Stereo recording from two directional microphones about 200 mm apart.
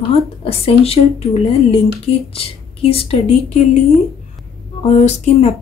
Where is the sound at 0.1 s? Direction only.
30° left (ahead or behind).